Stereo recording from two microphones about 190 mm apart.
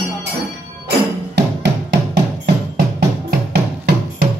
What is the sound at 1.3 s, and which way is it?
Music, 65° right (ahead or behind).